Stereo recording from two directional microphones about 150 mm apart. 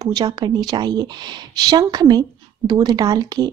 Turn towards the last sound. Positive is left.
turn(degrees=-25)  # may be behind; listen again after turning